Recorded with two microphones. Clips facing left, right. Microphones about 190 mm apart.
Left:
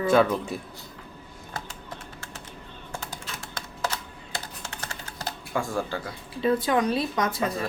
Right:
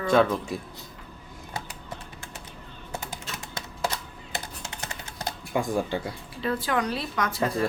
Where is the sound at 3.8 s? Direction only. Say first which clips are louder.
Right 1 dB; 20° right (ahead or behind).